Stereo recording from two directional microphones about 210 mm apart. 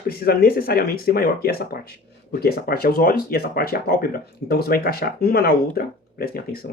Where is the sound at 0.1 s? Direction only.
45° left (ahead or behind).